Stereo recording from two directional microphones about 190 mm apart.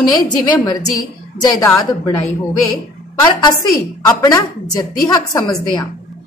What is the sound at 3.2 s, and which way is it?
A woman's voice, 20° left (ahead or behind).